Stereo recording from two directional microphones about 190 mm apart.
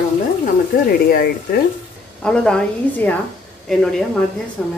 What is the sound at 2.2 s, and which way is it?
A woman's voice, 5° left (ahead or behind).